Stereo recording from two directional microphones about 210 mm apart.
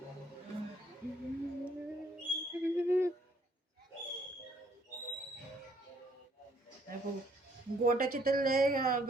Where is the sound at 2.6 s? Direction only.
10° right (ahead or behind).